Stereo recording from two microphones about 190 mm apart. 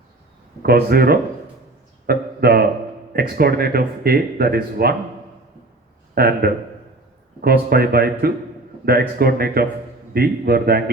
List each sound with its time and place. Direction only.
0.6 s speech: 55° right (ahead or behind)
2.0 s a sound: 55° right (ahead or behind)
3.1 s speech: 55° right (ahead or behind)
6.1 s speech: 55° right (ahead or behind)